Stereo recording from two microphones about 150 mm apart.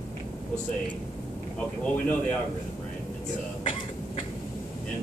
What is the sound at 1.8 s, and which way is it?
Speech, 10° left (ahead or behind).